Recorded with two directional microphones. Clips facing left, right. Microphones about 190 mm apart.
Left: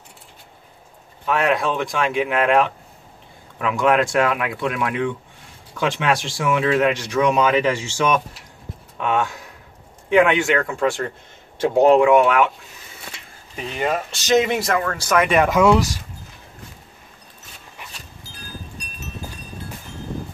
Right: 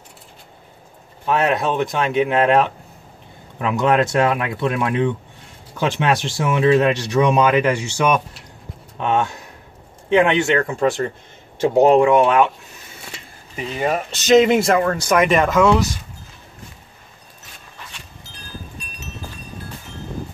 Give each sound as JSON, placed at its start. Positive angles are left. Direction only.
{"t": 1.2, "sound": "speech", "side_deg": -30}
{"t": 3.7, "sound": "speech", "side_deg": -25}
{"t": 13.6, "sound": "speech", "side_deg": -5}
{"t": 13.8, "sound": "speech", "side_deg": -20}
{"t": 15.3, "sound": "speech", "side_deg": 10}